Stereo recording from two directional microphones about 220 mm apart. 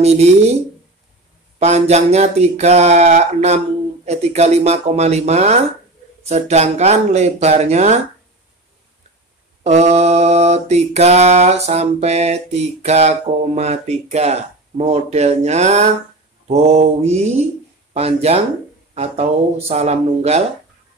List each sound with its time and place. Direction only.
0.0 s mantra: 30° right (ahead or behind)
1.6 s speech: 30° right (ahead or behind)
9.6 s mantra: 30° right (ahead or behind)
19.7 s mantra: 30° right (ahead or behind)